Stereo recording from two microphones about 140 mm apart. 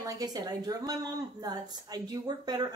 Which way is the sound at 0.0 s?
25° right (ahead or behind).